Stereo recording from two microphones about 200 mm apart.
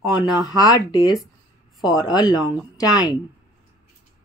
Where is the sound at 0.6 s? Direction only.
20° left (ahead or behind).